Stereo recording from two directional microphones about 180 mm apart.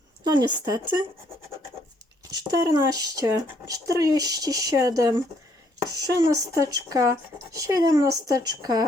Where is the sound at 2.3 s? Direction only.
20° right (ahead or behind).